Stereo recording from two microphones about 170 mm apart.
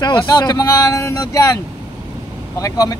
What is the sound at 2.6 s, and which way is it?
Speech, 20° left (ahead or behind).